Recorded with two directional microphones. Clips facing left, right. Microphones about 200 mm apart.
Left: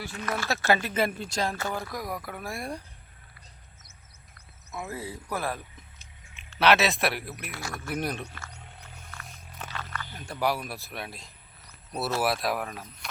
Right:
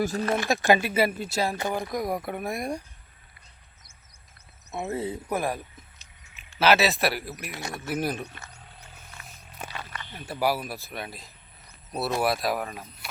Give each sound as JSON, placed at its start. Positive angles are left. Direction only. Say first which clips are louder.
{"t": 0.0, "sound": "speech", "louder": "right 11 dB", "side_deg": -40}
{"t": 0.3, "sound": "speech", "louder": "right 2 dB", "side_deg": -15}
{"t": 1.6, "sound": "speech", "louder": "right 5 dB", "side_deg": -20}
{"t": 4.7, "sound": "speech", "louder": "right 6 dB", "side_deg": -25}
{"t": 6.3, "sound": "speech", "louder": "right 1 dB", "side_deg": 0}
{"t": 7.5, "sound": "speech", "louder": "right 2 dB", "side_deg": -20}
{"t": 7.9, "sound": "speech", "louder": "right 3 dB", "side_deg": -5}
{"t": 9.2, "sound": "a sound", "louder": "right 3 dB", "side_deg": -10}
{"t": 10.2, "sound": "speech", "louder": "right 2 dB", "side_deg": -5}